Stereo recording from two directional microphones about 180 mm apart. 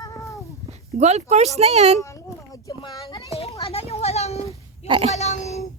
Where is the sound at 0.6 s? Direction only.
35° right (ahead or behind).